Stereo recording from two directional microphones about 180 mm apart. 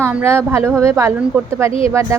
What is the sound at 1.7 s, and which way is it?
Speech, 30° left (ahead or behind).